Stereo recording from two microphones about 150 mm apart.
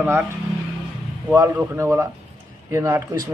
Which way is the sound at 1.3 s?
20° right (ahead or behind).